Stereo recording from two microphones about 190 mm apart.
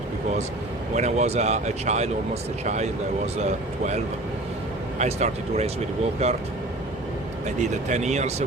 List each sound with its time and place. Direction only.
0.9 s speech: 35° right (ahead or behind)
4.9 s speech: 35° right (ahead or behind)
7.4 s speech: 40° right (ahead or behind)